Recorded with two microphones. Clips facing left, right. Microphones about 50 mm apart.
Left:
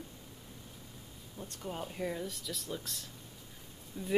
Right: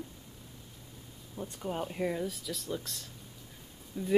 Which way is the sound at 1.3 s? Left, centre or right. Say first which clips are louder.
Right 5 dB; centre.